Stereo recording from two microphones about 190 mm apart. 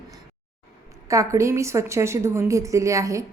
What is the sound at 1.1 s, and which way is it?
A woman's voice, 15° right (ahead or behind).